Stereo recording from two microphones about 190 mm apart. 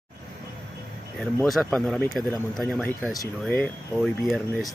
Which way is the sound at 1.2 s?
5° left (ahead or behind).